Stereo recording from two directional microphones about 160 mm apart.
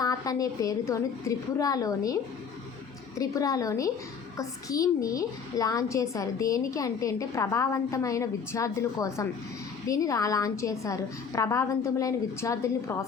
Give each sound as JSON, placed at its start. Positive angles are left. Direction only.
{"t": 0.0, "sound": "a child's voice", "side_deg": 20}
{"t": 3.2, "sound": "a child's voice", "side_deg": 20}